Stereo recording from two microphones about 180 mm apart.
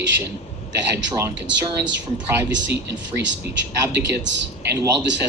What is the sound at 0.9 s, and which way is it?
Speech, 15° right (ahead or behind).